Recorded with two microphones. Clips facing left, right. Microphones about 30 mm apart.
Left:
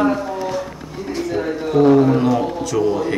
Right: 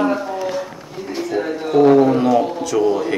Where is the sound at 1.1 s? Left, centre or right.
Centre.